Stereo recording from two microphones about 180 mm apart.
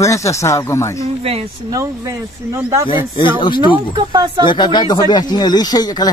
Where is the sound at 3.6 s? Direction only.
25° right (ahead or behind).